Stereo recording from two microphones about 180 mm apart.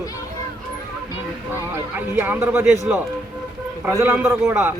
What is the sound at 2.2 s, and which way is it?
Speech, 10° right (ahead or behind).